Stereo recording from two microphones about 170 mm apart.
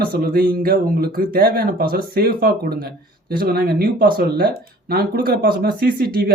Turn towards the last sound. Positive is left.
turn(degrees=-60)  # may be behind; listen again after turning